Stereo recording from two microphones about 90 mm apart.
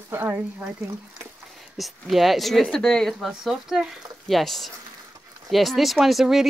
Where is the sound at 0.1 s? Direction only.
25° right (ahead or behind).